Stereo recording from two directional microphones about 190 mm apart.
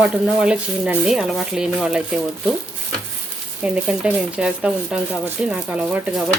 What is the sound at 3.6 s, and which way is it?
Speech, 5° right (ahead or behind).